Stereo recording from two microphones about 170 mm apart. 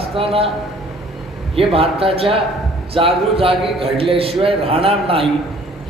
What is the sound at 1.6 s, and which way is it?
A man's voice, 35° right (ahead or behind).